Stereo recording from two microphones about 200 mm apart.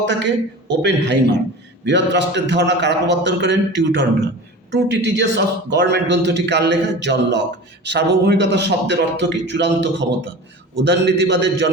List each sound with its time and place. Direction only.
0.1 s a man's voice: 60° right (ahead or behind)